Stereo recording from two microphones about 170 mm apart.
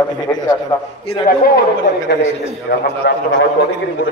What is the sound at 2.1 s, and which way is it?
A man's voice, 80° left.